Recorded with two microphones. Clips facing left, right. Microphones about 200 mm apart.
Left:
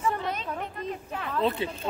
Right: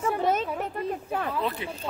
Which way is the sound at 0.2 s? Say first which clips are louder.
Right 8 dB; 45° right (ahead or behind).